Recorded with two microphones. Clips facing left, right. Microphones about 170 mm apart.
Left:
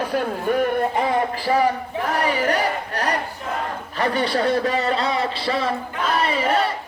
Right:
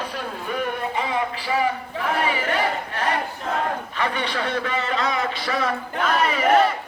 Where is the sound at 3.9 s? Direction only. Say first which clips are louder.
Left 8 dB; 35° left (ahead or behind).